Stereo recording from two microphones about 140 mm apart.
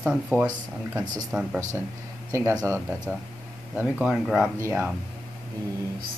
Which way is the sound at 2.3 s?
20° right (ahead or behind).